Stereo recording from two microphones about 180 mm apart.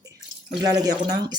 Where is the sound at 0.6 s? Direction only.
20° right (ahead or behind).